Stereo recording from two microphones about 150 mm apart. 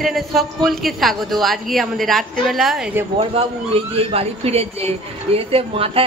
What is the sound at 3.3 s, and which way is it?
Speech, 40° right (ahead or behind).